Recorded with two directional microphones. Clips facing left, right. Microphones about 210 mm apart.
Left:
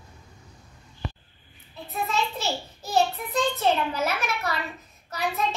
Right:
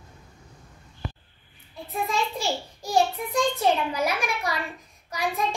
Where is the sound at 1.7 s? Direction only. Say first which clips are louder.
Right 1 dB; 10° right (ahead or behind).